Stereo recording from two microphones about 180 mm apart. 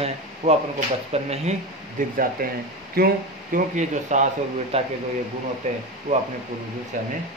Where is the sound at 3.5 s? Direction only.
45° right (ahead or behind).